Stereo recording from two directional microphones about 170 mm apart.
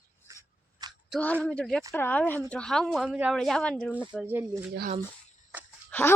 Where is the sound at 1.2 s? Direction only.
5° left (ahead or behind).